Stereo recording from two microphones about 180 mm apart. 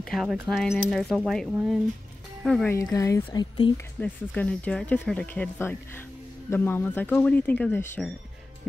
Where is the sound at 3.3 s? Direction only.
25° left (ahead or behind).